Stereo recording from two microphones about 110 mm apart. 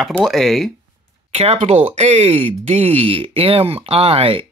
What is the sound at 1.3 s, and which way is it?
Speech, 80° right.